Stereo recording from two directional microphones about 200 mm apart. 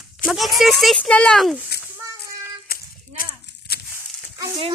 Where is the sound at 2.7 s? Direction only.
50° left (ahead or behind).